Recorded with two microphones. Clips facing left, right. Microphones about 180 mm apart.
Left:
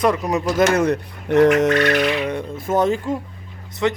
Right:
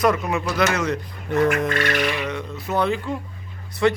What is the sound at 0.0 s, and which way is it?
Speech, 30° left (ahead or behind).